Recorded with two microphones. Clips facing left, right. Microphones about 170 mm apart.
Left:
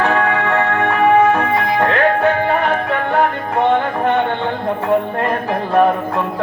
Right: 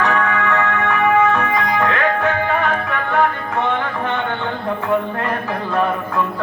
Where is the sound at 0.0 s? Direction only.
30° left (ahead or behind).